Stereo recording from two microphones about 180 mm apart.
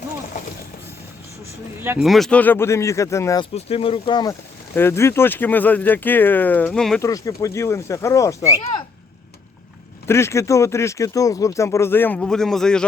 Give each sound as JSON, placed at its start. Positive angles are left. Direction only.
{"t": 2.0, "sound": "speech", "side_deg": 0}
{"t": 3.5, "sound": "speech", "side_deg": 35}
{"t": 4.7, "sound": "speech", "side_deg": 15}
{"t": 7.0, "sound": "speech", "side_deg": 20}
{"t": 10.1, "sound": "speech", "side_deg": 15}